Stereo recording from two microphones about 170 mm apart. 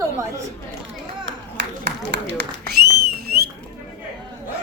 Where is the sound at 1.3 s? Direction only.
90° right; by 3.5 s 70° right (ahead or behind).